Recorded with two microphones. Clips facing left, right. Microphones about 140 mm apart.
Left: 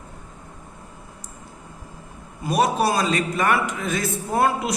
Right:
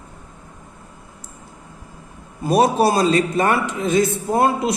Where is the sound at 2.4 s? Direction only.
30° right (ahead or behind).